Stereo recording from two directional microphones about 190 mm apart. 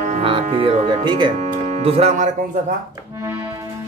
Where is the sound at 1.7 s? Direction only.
30° right (ahead or behind).